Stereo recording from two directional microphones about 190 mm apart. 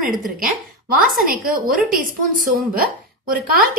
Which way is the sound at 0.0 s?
45° right (ahead or behind).